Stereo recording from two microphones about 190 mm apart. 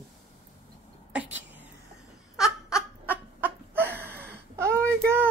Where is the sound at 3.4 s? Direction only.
10° right (ahead or behind).